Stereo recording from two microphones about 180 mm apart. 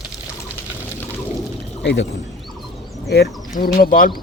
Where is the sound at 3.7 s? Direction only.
50° left (ahead or behind).